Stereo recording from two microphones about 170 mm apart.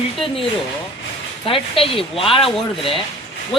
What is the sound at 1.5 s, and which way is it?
Speech, 30° left (ahead or behind).